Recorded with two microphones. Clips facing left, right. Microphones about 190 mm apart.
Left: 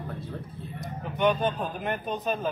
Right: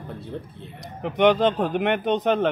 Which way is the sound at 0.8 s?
85° right.